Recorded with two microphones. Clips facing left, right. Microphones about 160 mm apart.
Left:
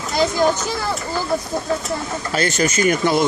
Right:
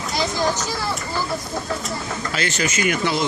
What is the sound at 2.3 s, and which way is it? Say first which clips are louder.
Speech: left 6 dB; 45° left (ahead or behind).